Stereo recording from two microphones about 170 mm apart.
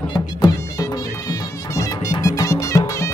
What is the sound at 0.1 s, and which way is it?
Music, 25° left (ahead or behind).